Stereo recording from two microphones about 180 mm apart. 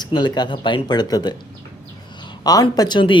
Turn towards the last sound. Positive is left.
turn(degrees=25)  # may be behind; listen again after turning